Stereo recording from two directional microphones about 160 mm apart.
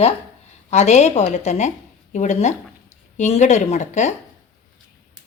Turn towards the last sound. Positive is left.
turn(degrees=45)  # may be behind; listen again after turning